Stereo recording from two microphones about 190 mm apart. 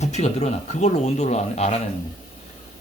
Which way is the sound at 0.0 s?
35° left (ahead or behind).